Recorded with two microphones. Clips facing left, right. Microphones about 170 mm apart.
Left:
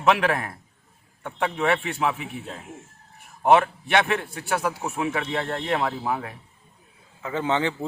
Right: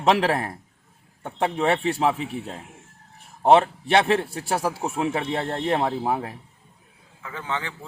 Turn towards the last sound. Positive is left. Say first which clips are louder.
# left 6 dB
turn(degrees=20)  # may be behind; listen again after turning